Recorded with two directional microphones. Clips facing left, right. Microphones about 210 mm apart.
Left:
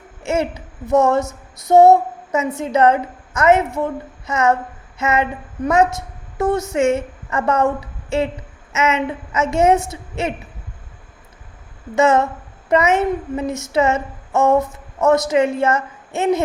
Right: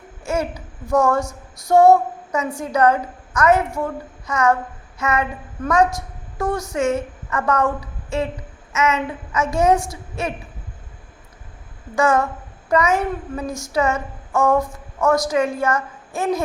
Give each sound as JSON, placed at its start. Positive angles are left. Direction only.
{"t": 0.2, "sound": "a child's voice", "side_deg": 25}
{"t": 11.9, "sound": "a woman's voice", "side_deg": 25}